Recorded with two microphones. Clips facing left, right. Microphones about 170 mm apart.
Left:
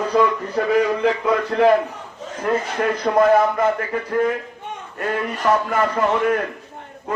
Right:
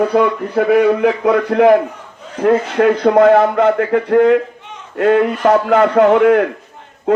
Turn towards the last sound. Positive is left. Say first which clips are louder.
# right 12 dB
turn(degrees=-75)  # may be behind; listen again after turning